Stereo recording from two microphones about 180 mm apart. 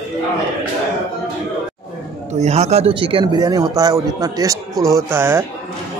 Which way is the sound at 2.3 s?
35° right (ahead or behind).